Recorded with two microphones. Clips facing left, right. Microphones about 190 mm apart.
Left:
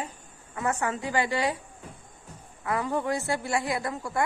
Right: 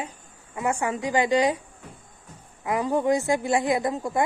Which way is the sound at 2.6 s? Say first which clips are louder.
Right 5 dB; 20° right (ahead or behind).